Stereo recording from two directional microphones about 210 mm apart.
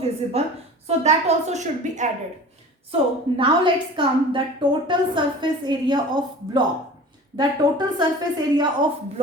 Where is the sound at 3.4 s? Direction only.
25° right (ahead or behind).